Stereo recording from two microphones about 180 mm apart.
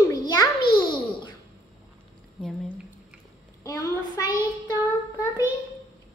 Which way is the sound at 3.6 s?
20° left (ahead or behind).